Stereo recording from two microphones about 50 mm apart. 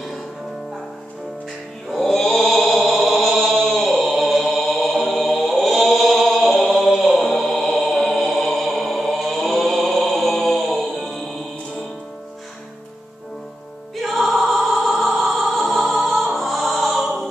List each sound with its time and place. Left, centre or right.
1.9 s mantra: centre
2.9 s chant: centre
14.0 s music: centre